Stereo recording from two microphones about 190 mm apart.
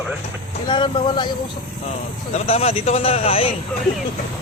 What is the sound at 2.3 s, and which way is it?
Speech, 35° left (ahead or behind).